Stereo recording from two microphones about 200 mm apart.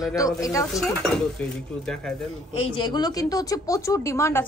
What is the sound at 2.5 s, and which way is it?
A woman's voice, 25° left (ahead or behind).